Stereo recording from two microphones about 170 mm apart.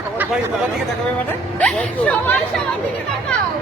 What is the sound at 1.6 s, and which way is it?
Speech, 5° left (ahead or behind).